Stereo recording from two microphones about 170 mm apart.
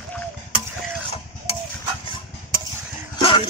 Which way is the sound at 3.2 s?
30° left (ahead or behind).